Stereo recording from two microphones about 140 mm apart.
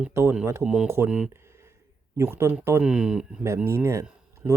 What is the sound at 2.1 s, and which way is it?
Speech, 20° right (ahead or behind).